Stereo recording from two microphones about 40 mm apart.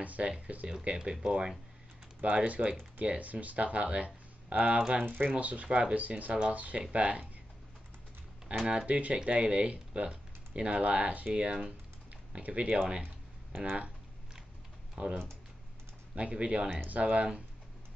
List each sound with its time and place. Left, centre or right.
0.0 s speech: right
0.8 s speech: right
2.2 s speech: right
5.0 s speech: right
5.3 s speech: right
5.9 s speech: right
8.5 s speech: right
8.8 s speech: right
11.2 s speech: right
12.3 s speech: right
15.0 s speech: right
16.2 s speech: right